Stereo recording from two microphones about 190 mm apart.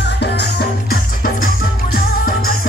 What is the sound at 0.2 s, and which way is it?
Music, 60° left (ahead or behind).